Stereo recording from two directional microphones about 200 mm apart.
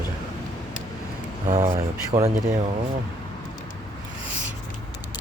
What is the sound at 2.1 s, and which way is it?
Speech, 35° right (ahead or behind).